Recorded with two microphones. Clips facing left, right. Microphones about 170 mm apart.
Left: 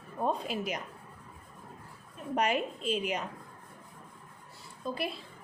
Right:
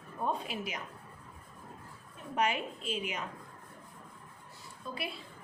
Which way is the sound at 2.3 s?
40° left (ahead or behind).